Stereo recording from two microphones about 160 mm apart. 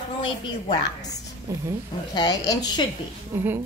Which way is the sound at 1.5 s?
20° right (ahead or behind).